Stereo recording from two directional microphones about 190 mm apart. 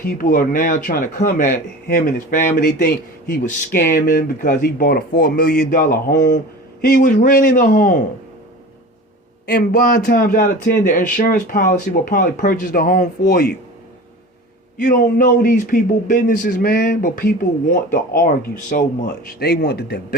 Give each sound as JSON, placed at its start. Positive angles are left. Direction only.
{"t": 0.0, "sound": "speech", "side_deg": 50}
{"t": 6.8, "sound": "speech", "side_deg": 50}
{"t": 9.5, "sound": "speech", "side_deg": 55}
{"t": 14.8, "sound": "speech", "side_deg": 50}